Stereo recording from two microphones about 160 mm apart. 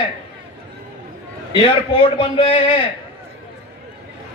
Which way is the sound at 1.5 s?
30° left (ahead or behind).